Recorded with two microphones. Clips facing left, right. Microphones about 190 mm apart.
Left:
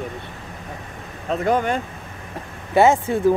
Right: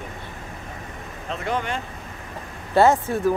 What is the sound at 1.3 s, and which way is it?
Speech, 45° left (ahead or behind).